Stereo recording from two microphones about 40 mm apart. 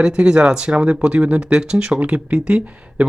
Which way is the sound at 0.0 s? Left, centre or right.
Right.